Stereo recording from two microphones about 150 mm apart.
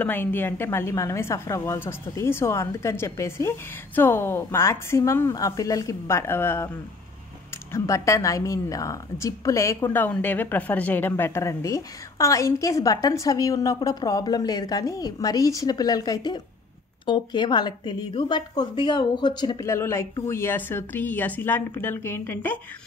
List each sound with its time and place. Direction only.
0.0 s a woman's voice: 10° left (ahead or behind)
7.7 s a woman's voice: 20° left (ahead or behind)
19.6 s a woman's voice: 15° left (ahead or behind)